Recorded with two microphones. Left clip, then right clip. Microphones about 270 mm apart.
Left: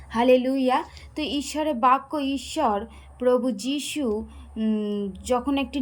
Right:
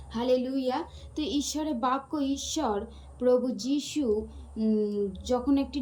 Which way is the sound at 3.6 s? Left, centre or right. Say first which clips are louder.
Left 2 dB; centre.